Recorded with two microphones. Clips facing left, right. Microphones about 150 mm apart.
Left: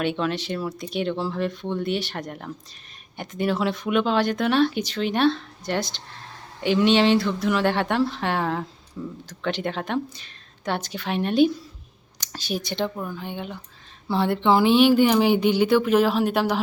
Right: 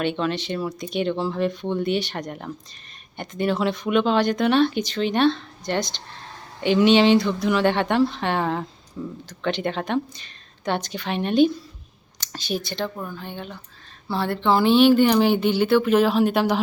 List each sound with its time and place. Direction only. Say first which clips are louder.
0.0 s speech: right 1 dB; 5° left (ahead or behind)